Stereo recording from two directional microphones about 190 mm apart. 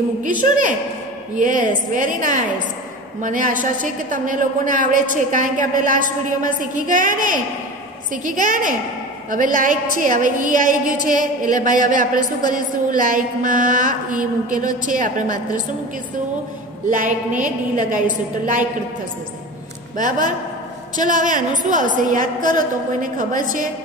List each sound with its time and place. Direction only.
0.2 s a woman's voice: 45° right (ahead or behind)
12.4 s a woman's voice: 20° left (ahead or behind)
12.9 s a woman's voice: 45° right (ahead or behind)
17.4 s a woman's voice: 45° right (ahead or behind)
20.0 s a woman's voice: 45° right (ahead or behind)